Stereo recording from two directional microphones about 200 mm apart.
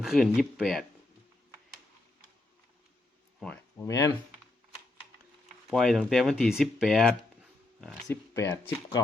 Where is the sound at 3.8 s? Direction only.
15° left (ahead or behind).